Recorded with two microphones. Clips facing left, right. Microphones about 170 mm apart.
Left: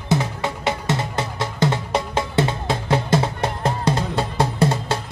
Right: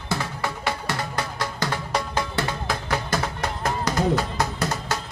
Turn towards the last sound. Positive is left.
turn(degrees=30)  # may be behind; listen again after turning